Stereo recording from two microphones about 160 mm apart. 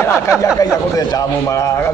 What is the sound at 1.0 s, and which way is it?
Speech, 20° left (ahead or behind).